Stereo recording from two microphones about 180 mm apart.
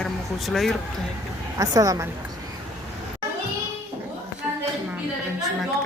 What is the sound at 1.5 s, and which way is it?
Speech, 20° right (ahead or behind).